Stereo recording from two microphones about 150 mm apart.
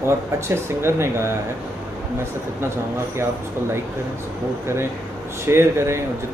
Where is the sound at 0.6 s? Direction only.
15° right (ahead or behind).